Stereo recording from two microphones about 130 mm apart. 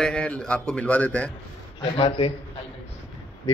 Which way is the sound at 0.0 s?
5° left (ahead or behind).